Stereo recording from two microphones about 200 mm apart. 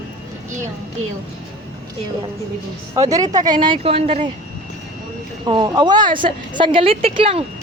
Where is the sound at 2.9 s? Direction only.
20° right (ahead or behind).